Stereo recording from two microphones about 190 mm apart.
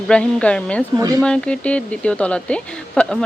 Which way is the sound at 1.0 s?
20° right (ahead or behind).